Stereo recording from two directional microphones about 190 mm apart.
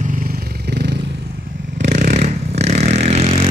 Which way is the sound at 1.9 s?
40° right (ahead or behind).